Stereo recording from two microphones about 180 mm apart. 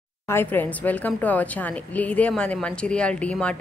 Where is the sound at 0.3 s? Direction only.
10° left (ahead or behind).